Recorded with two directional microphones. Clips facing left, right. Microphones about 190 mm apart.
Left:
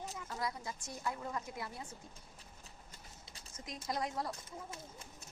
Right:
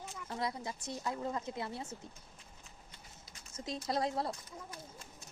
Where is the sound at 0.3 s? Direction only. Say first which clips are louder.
Right 4 dB; 25° right (ahead or behind).